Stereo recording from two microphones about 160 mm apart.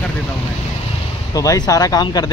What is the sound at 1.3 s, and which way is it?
Speech, 20° left (ahead or behind).